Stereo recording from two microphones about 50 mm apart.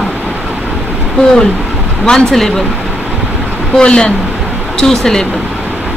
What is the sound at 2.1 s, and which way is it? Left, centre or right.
Speech, centre.